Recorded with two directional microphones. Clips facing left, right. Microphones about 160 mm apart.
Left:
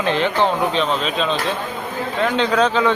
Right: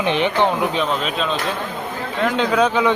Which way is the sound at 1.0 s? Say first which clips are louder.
Left 1 dB; 5° right (ahead or behind).